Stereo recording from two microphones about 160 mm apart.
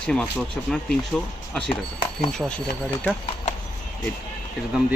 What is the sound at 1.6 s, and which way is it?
Speech, 35° left (ahead or behind).